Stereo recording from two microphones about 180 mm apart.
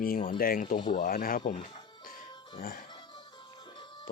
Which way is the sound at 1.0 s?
50° left (ahead or behind).